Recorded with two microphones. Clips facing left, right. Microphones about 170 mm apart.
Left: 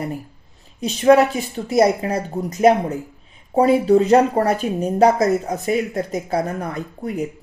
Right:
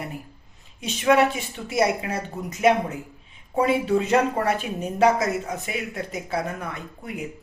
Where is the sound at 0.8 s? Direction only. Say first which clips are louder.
Left 6 dB; 35° left (ahead or behind).